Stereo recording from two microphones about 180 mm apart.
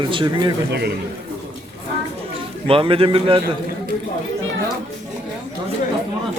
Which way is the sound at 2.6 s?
30° right (ahead or behind).